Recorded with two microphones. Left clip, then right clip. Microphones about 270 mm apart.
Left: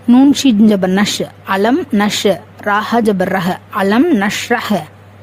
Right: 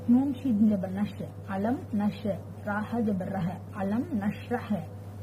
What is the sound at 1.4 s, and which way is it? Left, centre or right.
Speech, left.